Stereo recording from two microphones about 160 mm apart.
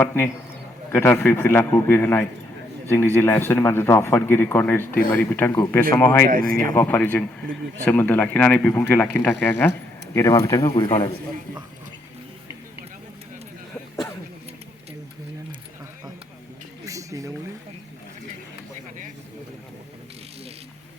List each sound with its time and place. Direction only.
0.0 s a man's voice: 15° left (ahead or behind)
6.2 s speech: 60° right (ahead or behind)
6.6 s a man's voice: 15° left (ahead or behind)
10.6 s a man's voice: 35° left (ahead or behind)
16.8 s a sound: 20° right (ahead or behind)